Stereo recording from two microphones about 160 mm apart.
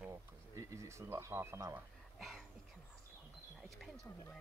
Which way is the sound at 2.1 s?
Centre (ahead or behind).